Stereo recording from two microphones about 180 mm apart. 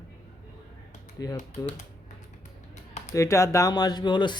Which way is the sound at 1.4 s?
40° left (ahead or behind).